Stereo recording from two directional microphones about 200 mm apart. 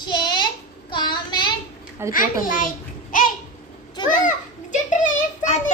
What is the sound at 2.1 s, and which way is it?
Speech, 45° left (ahead or behind).